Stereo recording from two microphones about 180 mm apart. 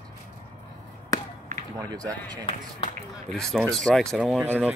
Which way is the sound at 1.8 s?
20° right (ahead or behind).